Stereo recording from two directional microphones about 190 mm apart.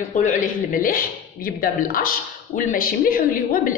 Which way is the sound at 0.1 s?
40° left (ahead or behind).